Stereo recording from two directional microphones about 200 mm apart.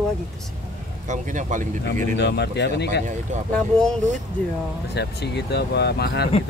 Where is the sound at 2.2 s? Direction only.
55° left (ahead or behind).